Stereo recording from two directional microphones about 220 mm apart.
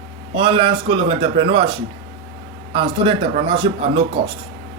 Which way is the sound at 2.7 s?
25° right (ahead or behind).